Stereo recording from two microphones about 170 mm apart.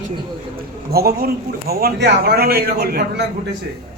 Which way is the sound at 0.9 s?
65° right (ahead or behind).